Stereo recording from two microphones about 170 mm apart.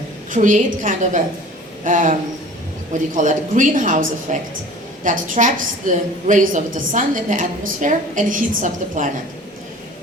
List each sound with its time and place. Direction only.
0.3 s a woman's voice: 50° right (ahead or behind)
3.2 s a woman's voice: 45° right (ahead or behind)